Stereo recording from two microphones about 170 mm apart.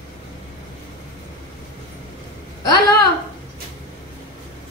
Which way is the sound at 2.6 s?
25° left (ahead or behind).